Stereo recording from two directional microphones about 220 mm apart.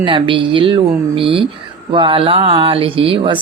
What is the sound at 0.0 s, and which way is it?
Speech, 25° right (ahead or behind).